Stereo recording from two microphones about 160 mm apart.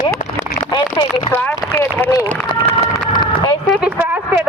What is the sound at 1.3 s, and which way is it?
Speech, 10° left (ahead or behind).